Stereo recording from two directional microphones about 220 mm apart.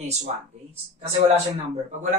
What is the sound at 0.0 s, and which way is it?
Speech, 30° right (ahead or behind).